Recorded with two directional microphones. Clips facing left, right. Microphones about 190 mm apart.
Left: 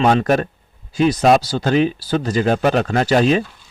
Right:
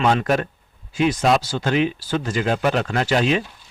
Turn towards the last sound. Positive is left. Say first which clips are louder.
# left 4 dB
turn(degrees=40)  # may be behind; listen again after turning